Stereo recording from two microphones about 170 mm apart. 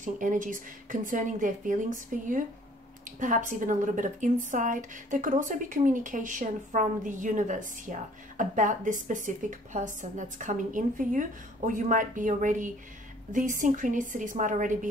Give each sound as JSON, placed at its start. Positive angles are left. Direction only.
{"t": 0.0, "sound": "a woman's voice", "side_deg": -50}